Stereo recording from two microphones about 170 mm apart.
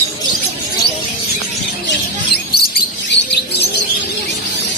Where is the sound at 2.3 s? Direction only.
70° left (ahead or behind).